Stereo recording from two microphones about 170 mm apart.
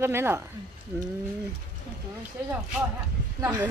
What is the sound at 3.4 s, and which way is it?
Speech, 15° right (ahead or behind).